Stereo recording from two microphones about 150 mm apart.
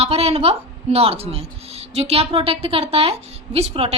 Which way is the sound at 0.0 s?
45° right (ahead or behind).